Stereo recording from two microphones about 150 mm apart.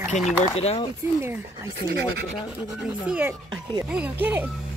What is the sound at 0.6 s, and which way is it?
Speech, 45° left (ahead or behind).